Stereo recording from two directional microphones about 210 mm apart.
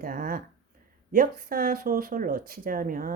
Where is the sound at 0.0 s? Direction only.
40° right (ahead or behind).